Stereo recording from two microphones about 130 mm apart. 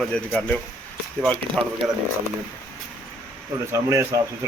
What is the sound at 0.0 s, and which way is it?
Speech, 5° left (ahead or behind).